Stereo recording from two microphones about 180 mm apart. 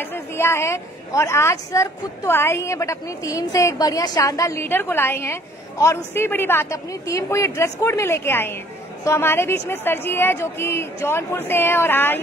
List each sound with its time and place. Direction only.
0.0 s a woman's voice: 15° left (ahead or behind)